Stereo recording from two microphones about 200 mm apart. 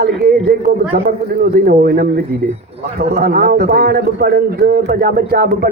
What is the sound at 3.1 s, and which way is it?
A man's voice, 45° right (ahead or behind).